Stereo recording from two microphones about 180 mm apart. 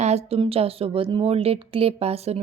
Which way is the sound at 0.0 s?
35° right (ahead or behind).